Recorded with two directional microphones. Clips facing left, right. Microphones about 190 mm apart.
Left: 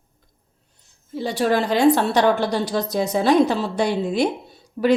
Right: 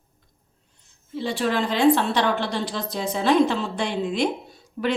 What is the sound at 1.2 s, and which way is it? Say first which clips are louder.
A woman's voice: left 4 dB; 40° left (ahead or behind).